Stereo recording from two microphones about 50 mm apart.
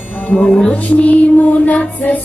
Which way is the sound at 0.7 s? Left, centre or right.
Left.